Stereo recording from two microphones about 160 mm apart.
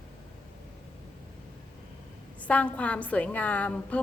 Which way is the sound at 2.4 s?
10° left (ahead or behind).